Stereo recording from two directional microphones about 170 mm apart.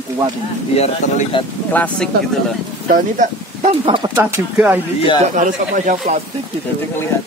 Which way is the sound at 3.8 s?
30° right (ahead or behind).